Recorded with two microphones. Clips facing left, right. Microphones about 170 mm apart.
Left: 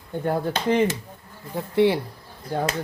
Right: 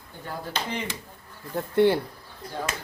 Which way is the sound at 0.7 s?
50° left (ahead or behind).